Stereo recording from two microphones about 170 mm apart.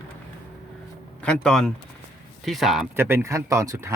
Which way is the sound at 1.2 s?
5° left (ahead or behind).